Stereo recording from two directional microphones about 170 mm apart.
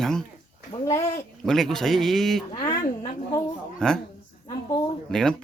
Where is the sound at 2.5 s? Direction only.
25° left (ahead or behind).